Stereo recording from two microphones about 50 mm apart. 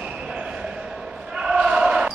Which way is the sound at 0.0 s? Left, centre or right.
Centre.